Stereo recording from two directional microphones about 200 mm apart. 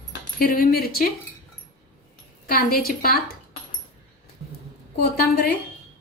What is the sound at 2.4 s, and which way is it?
Speech, 50° left (ahead or behind).